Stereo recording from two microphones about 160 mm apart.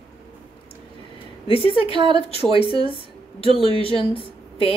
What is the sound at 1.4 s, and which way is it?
Speech, 35° left (ahead or behind).